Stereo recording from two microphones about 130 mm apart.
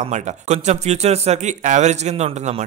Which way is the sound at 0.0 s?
65° right (ahead or behind).